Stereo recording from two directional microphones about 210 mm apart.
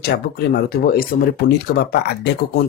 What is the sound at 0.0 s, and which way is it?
Speech, 50° left (ahead or behind).